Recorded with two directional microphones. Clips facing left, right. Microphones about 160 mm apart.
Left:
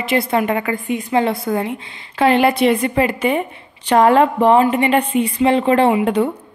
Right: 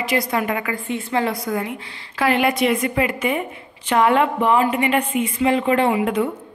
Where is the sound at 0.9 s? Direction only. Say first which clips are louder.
Left 4 dB; 15° left (ahead or behind); by 6.2 s 35° left (ahead or behind).